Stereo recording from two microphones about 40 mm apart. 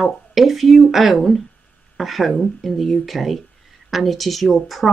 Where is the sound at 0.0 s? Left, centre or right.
Centre.